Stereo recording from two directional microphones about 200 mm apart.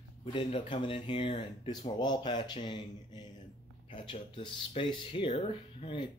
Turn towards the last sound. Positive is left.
turn(degrees=25)  # may be behind; listen again after turning